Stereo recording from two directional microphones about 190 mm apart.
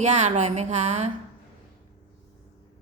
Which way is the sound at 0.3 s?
35° right (ahead or behind).